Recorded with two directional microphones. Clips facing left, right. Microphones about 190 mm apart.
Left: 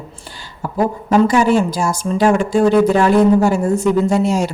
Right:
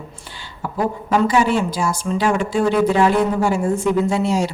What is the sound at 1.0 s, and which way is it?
A woman's voice, 45° left (ahead or behind).